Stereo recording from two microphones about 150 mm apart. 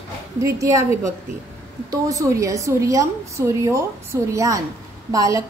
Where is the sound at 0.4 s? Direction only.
20° right (ahead or behind).